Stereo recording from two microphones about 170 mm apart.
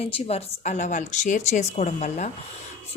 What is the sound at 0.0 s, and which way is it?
Speech, 35° left (ahead or behind).